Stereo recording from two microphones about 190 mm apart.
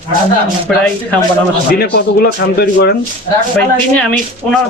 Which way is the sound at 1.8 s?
55° left (ahead or behind).